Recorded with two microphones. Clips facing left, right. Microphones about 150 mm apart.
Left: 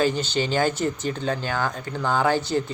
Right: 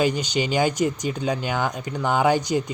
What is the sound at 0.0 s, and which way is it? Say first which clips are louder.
Speech: even; 15° right (ahead or behind).